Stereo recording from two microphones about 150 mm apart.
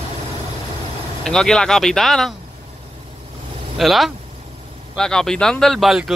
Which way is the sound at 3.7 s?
Centre (ahead or behind).